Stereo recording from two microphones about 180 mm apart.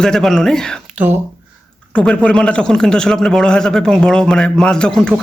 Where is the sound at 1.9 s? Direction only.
5° left (ahead or behind).